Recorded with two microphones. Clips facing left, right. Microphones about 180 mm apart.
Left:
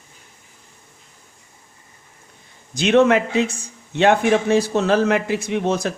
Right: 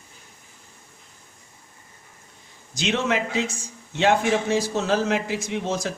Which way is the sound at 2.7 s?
55° left (ahead or behind).